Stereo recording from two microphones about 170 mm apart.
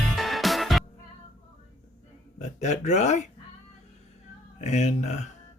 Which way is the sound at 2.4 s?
45° left (ahead or behind).